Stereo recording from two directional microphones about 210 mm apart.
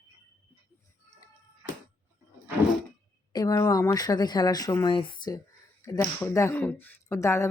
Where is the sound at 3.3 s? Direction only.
15° left (ahead or behind).